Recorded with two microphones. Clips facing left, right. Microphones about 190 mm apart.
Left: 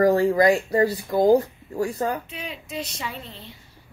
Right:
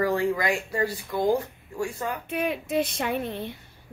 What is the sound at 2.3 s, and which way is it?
Speech, 55° right (ahead or behind).